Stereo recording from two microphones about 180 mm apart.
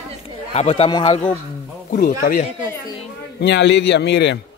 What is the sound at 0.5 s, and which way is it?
Speech, 35° left (ahead or behind).